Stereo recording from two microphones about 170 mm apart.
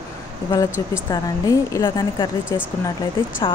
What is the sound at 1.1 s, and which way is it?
A woman's voice, 20° left (ahead or behind).